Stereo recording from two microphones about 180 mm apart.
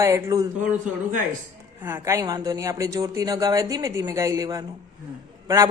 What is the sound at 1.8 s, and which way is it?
Speech, 15° right (ahead or behind).